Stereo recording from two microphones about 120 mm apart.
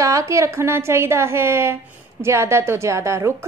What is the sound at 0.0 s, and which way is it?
A woman's voice, 25° right (ahead or behind).